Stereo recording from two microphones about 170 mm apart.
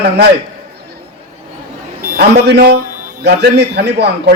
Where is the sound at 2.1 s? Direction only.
75° right (ahead or behind).